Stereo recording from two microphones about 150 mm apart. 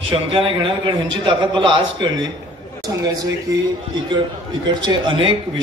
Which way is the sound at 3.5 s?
25° right (ahead or behind).